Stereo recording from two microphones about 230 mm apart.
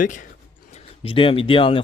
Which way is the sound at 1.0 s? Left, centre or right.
Left.